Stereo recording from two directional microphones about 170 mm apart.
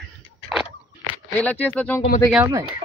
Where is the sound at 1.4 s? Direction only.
10° left (ahead or behind).